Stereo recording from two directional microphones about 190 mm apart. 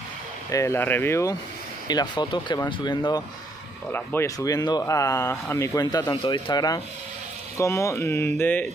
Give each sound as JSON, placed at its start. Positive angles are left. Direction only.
{"t": 0.5, "sound": "speech", "side_deg": 15}